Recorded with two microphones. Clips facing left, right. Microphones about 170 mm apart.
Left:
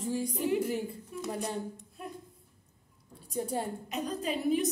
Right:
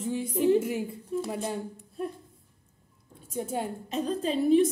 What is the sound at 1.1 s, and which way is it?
Speech, 30° right (ahead or behind).